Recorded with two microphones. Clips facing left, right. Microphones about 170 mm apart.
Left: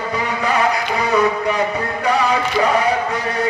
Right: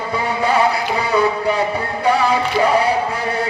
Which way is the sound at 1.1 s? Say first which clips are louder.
Even; 30° right (ahead or behind).